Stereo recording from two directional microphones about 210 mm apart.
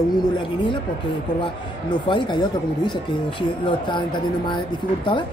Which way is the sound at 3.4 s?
20° left (ahead or behind).